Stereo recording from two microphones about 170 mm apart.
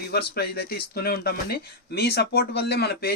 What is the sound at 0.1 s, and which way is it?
Speech, 70° left (ahead or behind).